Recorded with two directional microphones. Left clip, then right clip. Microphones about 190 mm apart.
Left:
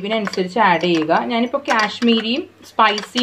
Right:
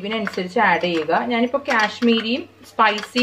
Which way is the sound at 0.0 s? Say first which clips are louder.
Left 4 dB; 50° left (ahead or behind).